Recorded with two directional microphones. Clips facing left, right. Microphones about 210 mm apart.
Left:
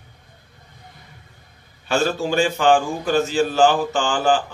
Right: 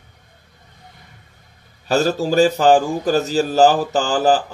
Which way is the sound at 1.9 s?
40° right (ahead or behind).